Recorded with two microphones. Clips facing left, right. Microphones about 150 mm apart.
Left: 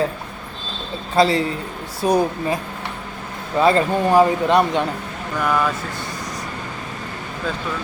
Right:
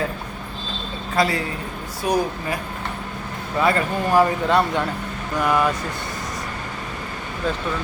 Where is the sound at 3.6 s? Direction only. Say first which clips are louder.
Left 4 dB; 25° left (ahead or behind).